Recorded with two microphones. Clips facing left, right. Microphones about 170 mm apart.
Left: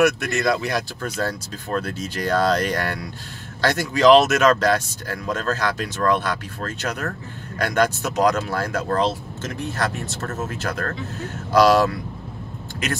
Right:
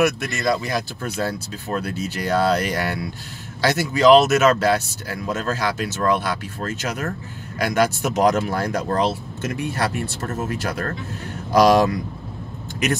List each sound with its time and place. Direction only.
0.0 s speech: centre (ahead or behind)
8.2 s speech: 20° right (ahead or behind)